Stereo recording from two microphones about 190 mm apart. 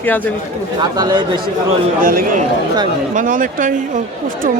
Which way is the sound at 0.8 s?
20° right (ahead or behind).